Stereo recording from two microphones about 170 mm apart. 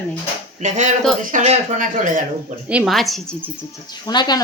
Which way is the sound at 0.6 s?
45° right (ahead or behind).